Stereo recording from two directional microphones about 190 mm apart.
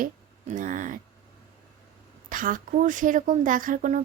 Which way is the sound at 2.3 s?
45° right (ahead or behind).